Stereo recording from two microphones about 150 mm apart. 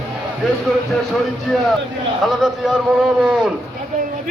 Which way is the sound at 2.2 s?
Centre (ahead or behind).